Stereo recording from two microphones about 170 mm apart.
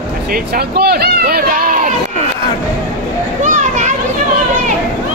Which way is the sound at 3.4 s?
45° right (ahead or behind).